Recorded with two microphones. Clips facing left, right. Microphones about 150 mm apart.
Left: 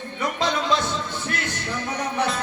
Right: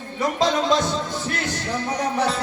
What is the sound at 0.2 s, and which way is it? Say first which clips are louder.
Music: right 4 dB; 35° right (ahead or behind).